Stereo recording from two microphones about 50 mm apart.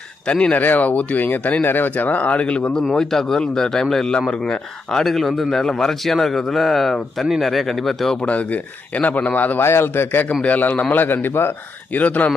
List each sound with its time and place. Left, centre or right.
0.3 s speech: left
0.6 s a man's voice: left; by 5.0 s centre
5.0 s a man's voice: centre
8.2 s speech: left
9.6 s a man's voice: left
10.4 s speech: left
12.0 s speech: left